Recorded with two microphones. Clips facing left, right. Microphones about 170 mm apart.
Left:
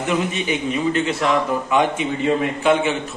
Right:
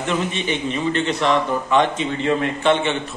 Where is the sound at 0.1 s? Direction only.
5° left (ahead or behind).